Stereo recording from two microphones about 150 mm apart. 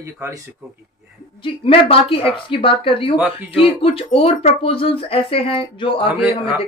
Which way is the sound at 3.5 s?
40° left (ahead or behind).